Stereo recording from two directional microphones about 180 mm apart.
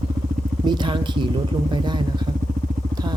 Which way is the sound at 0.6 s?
25° right (ahead or behind).